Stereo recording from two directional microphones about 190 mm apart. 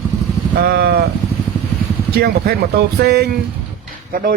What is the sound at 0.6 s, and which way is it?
Speech, 55° right (ahead or behind).